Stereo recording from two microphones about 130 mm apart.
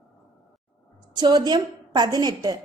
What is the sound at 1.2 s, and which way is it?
A woman's voice, 35° right (ahead or behind).